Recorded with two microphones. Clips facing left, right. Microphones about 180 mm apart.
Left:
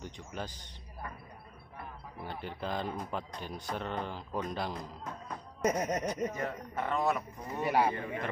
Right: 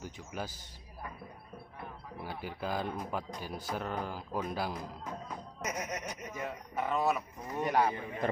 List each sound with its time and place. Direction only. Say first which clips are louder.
0.0 s speech: even; 5° right (ahead or behind)
2.2 s speech: even; 5° right (ahead or behind)
5.6 s speech: left 8 dB; 30° left (ahead or behind)
6.3 s a man's voice: left 1 dB; 10° right (ahead or behind)
7.6 s speech: left 1 dB; 10° left (ahead or behind)